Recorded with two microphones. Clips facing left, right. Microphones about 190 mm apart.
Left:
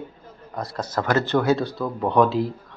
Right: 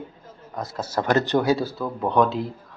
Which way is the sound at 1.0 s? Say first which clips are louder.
Even; 15° right (ahead or behind).